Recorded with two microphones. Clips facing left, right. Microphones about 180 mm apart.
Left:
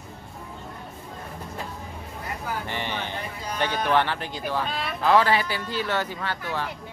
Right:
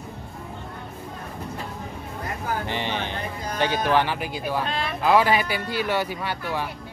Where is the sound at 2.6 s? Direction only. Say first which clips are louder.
Right 3 dB; 20° right (ahead or behind).